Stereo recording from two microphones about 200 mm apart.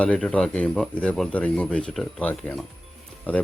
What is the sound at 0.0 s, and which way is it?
Speech, 5° left (ahead or behind).